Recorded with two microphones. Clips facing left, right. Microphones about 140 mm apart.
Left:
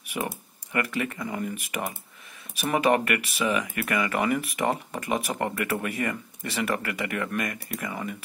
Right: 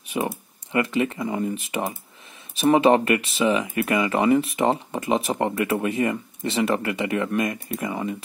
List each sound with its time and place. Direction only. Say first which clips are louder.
0.1 s speech: right 5 dB; 25° right (ahead or behind)